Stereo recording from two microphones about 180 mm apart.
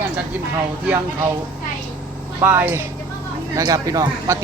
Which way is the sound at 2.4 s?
10° right (ahead or behind).